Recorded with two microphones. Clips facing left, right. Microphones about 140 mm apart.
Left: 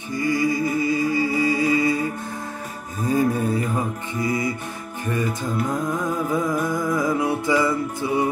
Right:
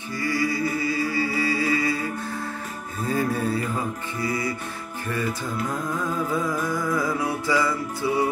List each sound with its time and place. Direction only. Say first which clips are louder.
0.1 s music: left 4 dB; 20° left (ahead or behind)
3.1 s music: left 4 dB; 15° left (ahead or behind)